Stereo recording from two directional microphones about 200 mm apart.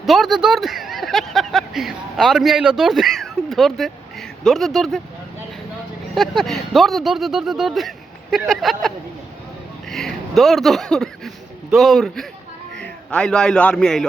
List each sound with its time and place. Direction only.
0.0 s speech: centre (ahead or behind)
6.1 s speech: centre (ahead or behind)
9.9 s a man's voice: centre (ahead or behind)